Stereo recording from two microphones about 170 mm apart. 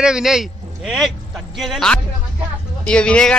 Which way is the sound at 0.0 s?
5° right (ahead or behind).